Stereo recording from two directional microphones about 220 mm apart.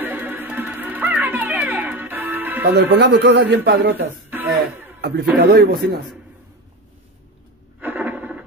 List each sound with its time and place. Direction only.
0.0 s music: 10° right (ahead or behind)
2.7 s speech: 50° right (ahead or behind)
4.3 s music: 10° right (ahead or behind)
5.0 s speech: 45° right (ahead or behind)
7.8 s a sound: 10° right (ahead or behind)